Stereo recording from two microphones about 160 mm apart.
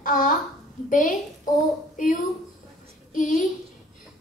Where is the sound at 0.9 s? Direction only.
55° left (ahead or behind).